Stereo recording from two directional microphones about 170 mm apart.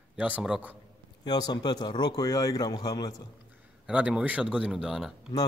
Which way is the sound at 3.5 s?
10° right (ahead or behind).